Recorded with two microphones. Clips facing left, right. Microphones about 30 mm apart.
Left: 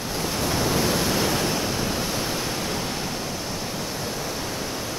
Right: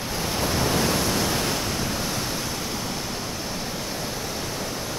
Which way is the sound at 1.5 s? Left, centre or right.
Centre.